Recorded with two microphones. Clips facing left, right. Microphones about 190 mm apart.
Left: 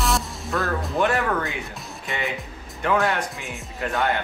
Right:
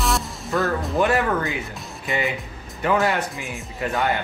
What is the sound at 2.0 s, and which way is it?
Speech, centre (ahead or behind).